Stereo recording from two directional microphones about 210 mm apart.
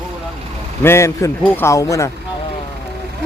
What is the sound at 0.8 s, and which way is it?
A man's voice, 15° left (ahead or behind).